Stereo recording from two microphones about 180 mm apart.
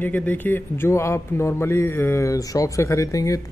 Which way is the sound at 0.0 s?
10° left (ahead or behind).